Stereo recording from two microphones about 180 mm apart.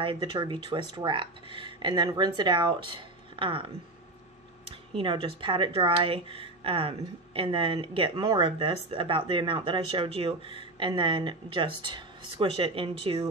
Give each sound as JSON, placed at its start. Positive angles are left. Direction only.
{"t": 0.0, "sound": "a woman's voice", "side_deg": -25}
{"t": 4.9, "sound": "a woman's voice", "side_deg": -30}